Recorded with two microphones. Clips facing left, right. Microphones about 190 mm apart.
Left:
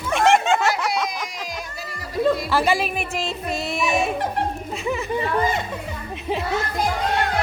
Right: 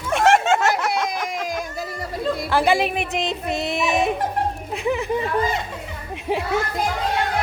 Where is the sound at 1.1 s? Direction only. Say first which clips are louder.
Right 5 dB; 55° right (ahead or behind).